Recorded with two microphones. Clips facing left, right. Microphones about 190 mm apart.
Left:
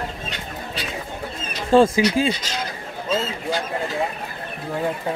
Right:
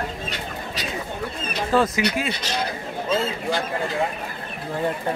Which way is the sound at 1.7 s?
30° left (ahead or behind).